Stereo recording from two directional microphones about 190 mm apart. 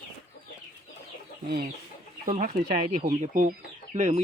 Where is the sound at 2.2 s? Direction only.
45° right (ahead or behind).